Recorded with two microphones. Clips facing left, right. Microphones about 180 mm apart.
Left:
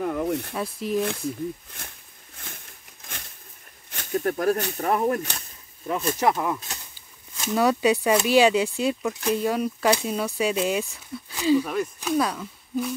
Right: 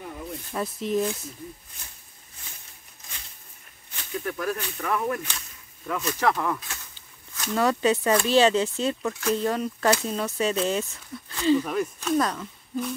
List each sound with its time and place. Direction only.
0.0 s speech: 75° left (ahead or behind)
0.6 s speech: 5° left (ahead or behind)
2.3 s a sound: 55° left (ahead or behind)
3.9 s speech: 45° left (ahead or behind)
5.9 s speech: 25° left (ahead or behind); by 12.9 s 5° left (ahead or behind)